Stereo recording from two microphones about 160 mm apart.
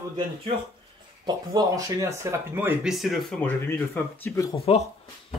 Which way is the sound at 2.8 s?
Centre (ahead or behind).